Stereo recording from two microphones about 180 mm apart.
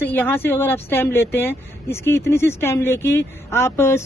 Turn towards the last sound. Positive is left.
turn(degrees=15)  # may be behind; listen again after turning